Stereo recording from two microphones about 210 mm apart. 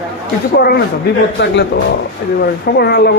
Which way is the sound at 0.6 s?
50° left (ahead or behind).